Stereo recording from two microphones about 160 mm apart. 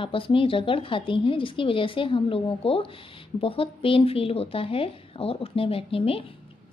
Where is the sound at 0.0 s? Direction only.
35° left (ahead or behind).